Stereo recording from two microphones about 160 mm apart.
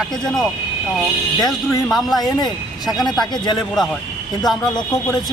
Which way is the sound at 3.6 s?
Centre (ahead or behind).